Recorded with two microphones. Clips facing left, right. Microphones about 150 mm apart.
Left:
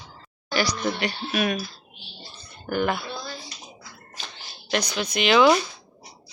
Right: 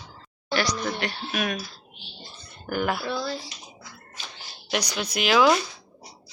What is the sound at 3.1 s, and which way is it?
Speech, 90° right.